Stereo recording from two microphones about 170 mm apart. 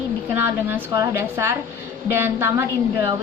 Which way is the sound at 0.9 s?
20° right (ahead or behind).